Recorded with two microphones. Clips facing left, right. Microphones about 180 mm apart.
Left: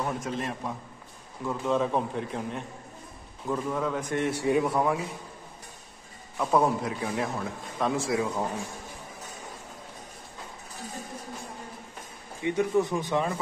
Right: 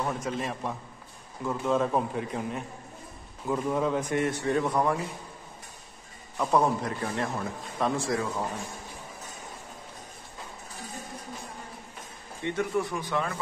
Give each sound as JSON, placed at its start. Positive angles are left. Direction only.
{"t": 0.2, "sound": "a man's voice", "side_deg": 0}
{"t": 3.4, "sound": "a man's voice", "side_deg": -15}
{"t": 4.3, "sound": "a man's voice", "side_deg": 10}
{"t": 6.3, "sound": "a man's voice", "side_deg": 0}
{"t": 12.4, "sound": "speech", "side_deg": 15}